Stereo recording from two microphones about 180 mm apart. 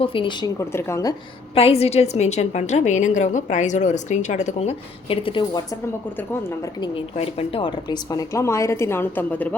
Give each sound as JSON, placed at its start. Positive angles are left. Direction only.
{"t": 0.0, "sound": "speech", "side_deg": 30}
{"t": 0.6, "sound": "speech", "side_deg": 15}
{"t": 1.5, "sound": "a woman's voice", "side_deg": 35}
{"t": 6.8, "sound": "speech", "side_deg": 30}